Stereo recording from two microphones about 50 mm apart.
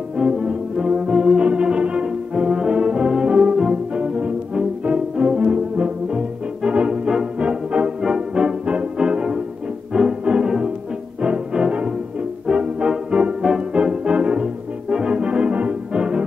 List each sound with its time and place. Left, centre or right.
0.2 s brass instrument: centre
3.5 s music: centre